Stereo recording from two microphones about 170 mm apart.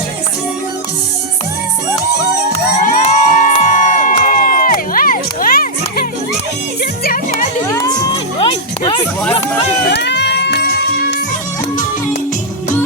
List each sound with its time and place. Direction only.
2.8 s crowd: 45° left (ahead or behind)
7.7 s crowd: 20° left (ahead or behind)
8.4 s a sound: 30° left (ahead or behind)
9.8 s music: 80° left